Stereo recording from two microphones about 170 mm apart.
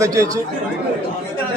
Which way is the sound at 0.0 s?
20° right (ahead or behind).